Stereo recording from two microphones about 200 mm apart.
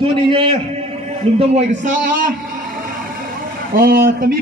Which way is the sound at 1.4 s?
35° right (ahead or behind).